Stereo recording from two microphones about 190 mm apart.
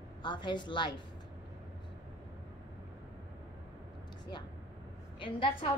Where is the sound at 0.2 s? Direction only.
25° left (ahead or behind).